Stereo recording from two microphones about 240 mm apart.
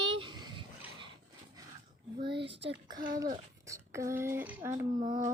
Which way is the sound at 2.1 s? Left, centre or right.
Right.